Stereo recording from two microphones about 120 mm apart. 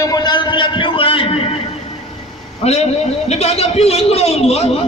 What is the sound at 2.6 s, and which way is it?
A man's voice, 60° left (ahead or behind).